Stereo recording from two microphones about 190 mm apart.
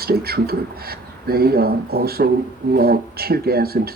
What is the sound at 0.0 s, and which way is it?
Speech, 55° right (ahead or behind).